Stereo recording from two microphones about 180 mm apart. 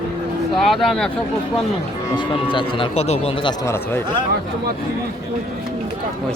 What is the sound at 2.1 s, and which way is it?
Speech, 25° left (ahead or behind).